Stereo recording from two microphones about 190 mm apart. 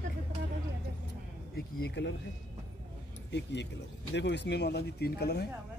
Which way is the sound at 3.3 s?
65° left (ahead or behind).